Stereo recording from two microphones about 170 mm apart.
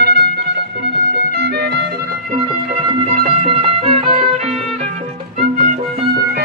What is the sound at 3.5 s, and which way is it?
Music, 35° right (ahead or behind).